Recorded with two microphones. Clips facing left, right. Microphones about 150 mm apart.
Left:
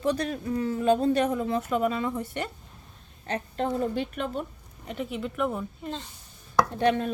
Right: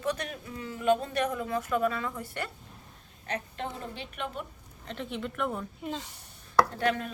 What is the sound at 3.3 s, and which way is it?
A woman's voice, 35° left (ahead or behind).